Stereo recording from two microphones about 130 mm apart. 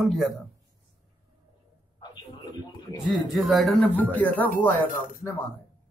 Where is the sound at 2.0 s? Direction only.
35° left (ahead or behind).